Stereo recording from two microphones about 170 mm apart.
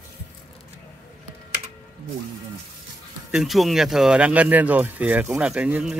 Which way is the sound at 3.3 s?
Centre (ahead or behind).